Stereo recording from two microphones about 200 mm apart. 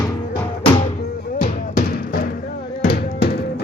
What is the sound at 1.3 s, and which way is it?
Music, 40° left (ahead or behind).